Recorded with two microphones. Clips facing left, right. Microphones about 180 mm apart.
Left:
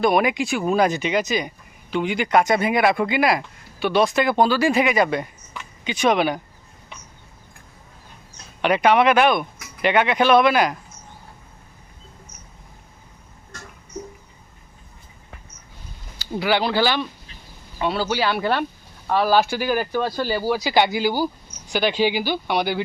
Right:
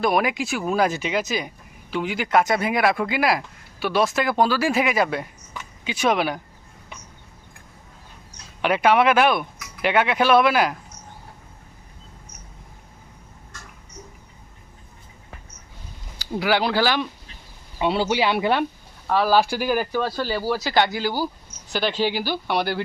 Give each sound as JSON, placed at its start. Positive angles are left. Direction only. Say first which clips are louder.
{"t": 0.0, "sound": "speech", "louder": "left 3 dB", "side_deg": 0}
{"t": 8.6, "sound": "speech", "louder": "left 1 dB", "side_deg": -5}
{"t": 16.3, "sound": "speech", "louder": "even", "side_deg": -5}
{"t": 17.7, "sound": "speech", "louder": "right 1 dB", "side_deg": -20}
{"t": 19.0, "sound": "speech", "louder": "even", "side_deg": 0}